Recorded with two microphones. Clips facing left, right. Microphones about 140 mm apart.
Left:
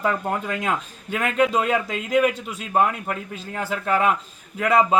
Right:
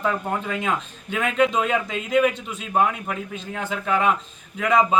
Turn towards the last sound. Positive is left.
turn(degrees=5)  # may be behind; listen again after turning